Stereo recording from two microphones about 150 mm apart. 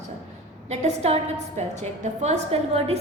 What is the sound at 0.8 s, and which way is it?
A woman's voice, 45° right (ahead or behind).